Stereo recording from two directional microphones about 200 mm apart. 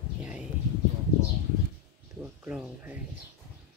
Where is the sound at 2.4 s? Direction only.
10° right (ahead or behind).